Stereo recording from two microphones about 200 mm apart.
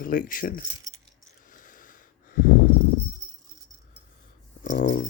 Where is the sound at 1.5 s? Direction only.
40° left (ahead or behind).